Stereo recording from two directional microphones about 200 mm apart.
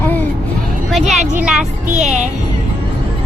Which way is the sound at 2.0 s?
35° right (ahead or behind).